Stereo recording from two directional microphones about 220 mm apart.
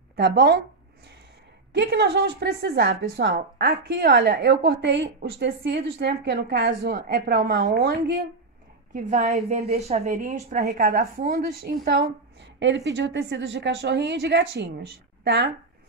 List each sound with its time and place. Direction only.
0.1 s speech: 50° right (ahead or behind)
1.7 s a woman's voice: 50° right (ahead or behind)
8.9 s a woman's voice: 35° right (ahead or behind); by 15.5 s 50° right (ahead or behind)